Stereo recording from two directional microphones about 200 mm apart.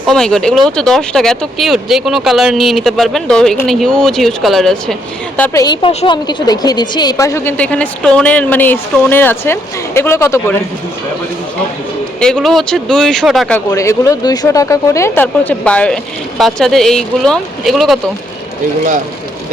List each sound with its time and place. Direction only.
0.1 s speech: 5° left (ahead or behind)
5.4 s a woman's voice: 20° left (ahead or behind)
12.2 s speech: centre (ahead or behind)
13.7 s a woman's voice: 15° left (ahead or behind); by 18.0 s centre (ahead or behind)